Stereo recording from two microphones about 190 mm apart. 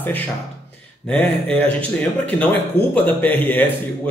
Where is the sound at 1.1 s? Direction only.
5° left (ahead or behind).